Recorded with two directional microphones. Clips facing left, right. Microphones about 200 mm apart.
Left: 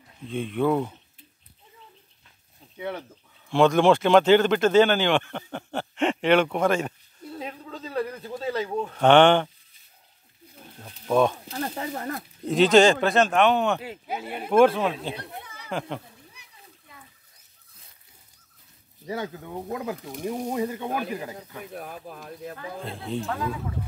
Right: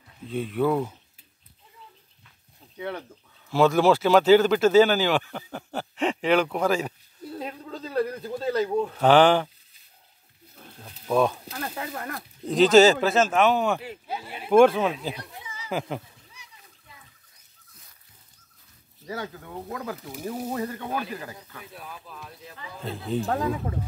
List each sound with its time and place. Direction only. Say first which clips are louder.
0.3 s speech: even; 5° right (ahead or behind)
3.4 s speech: left 1 dB; 5° right (ahead or behind)
7.3 s a sound: right 1 dB; centre (ahead or behind)
8.2 s speech: right 3 dB; 5° left (ahead or behind)
10.8 s speech: left 1 dB; centre (ahead or behind)
11.5 s speech: left 3 dB; 20° left (ahead or behind)
12.4 s speech: right 1 dB; centre (ahead or behind)
14.0 s speech: left 2 dB; 20° left (ahead or behind)
14.5 s speech: right 2 dB; centre (ahead or behind)
15.1 s a sound: left 2 dB; 55° left (ahead or behind)
19.0 s speech: left 3 dB; 20° left (ahead or behind)
21.6 s speech: left 5 dB; 50° left (ahead or behind)
22.8 s speech: right 4 dB; centre (ahead or behind)
23.2 s speech: right 5 dB; 45° right (ahead or behind)